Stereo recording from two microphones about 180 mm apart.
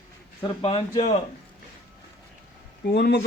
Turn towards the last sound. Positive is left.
turn(degrees=65)  # may be behind; listen again after turning